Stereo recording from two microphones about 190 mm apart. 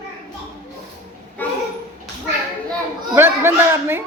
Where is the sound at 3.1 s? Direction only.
10° right (ahead or behind).